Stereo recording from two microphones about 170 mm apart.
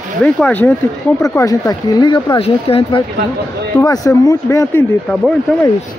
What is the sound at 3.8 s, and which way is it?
Speech, 20° left (ahead or behind).